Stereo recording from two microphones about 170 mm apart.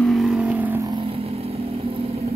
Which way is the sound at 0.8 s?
30° right (ahead or behind).